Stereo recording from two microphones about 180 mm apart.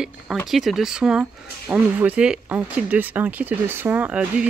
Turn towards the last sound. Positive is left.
turn(degrees=-10)  # may be behind; listen again after turning